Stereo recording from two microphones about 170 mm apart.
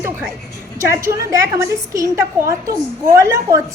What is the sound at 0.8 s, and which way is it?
A woman's voice, 15° right (ahead or behind).